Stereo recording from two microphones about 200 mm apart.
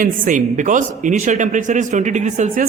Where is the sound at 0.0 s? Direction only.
40° right (ahead or behind).